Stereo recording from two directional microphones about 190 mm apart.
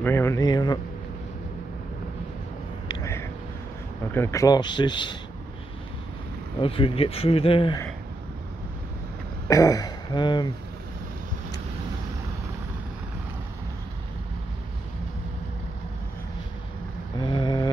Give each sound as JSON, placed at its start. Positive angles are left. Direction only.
{"t": 0.0, "sound": "speech", "side_deg": 15}
{"t": 2.9, "sound": "a sound", "side_deg": 15}
{"t": 4.1, "sound": "speech", "side_deg": 15}
{"t": 6.6, "sound": "speech", "side_deg": 30}
{"t": 9.5, "sound": "speech", "side_deg": 20}
{"t": 17.2, "sound": "a sound", "side_deg": 25}